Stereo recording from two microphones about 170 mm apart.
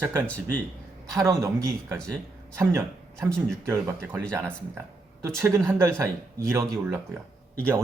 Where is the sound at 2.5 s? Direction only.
15° right (ahead or behind).